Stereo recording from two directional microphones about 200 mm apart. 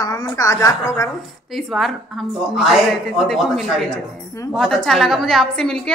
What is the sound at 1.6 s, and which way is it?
A woman's voice, centre (ahead or behind).